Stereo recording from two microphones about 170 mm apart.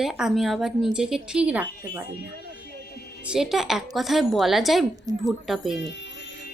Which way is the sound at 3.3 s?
Centre (ahead or behind).